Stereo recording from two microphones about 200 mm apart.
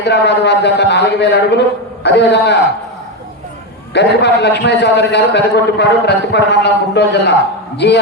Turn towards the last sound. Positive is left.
turn(degrees=60)  # may be behind; listen again after turning